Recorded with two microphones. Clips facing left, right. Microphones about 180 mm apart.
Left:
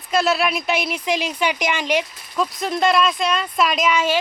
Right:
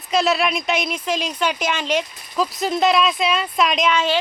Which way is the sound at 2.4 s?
Centre (ahead or behind).